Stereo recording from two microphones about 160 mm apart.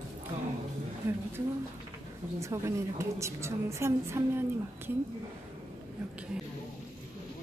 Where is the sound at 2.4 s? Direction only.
20° right (ahead or behind).